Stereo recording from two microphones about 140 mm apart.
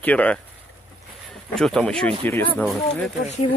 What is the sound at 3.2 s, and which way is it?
Speech, 55° left (ahead or behind).